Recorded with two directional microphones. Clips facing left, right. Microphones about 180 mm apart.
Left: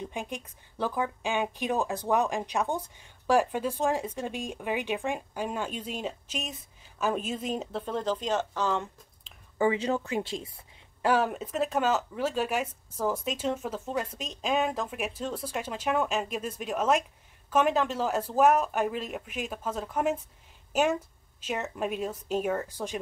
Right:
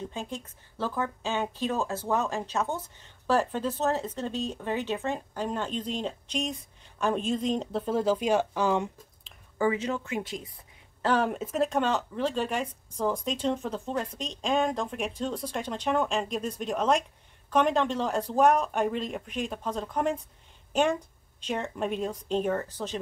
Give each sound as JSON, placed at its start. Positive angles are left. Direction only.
{"t": 0.0, "sound": "speech", "side_deg": 15}
{"t": 7.8, "sound": "speech", "side_deg": -5}
{"t": 9.6, "sound": "speech", "side_deg": 30}
{"t": 11.0, "sound": "speech", "side_deg": 5}